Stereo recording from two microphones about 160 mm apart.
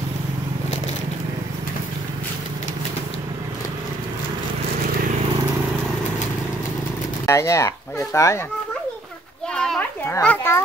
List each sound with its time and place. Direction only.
7.2 s speech: 20° left (ahead or behind)
9.6 s children playing: 5° left (ahead or behind)
10.2 s a child's voice: 10° left (ahead or behind)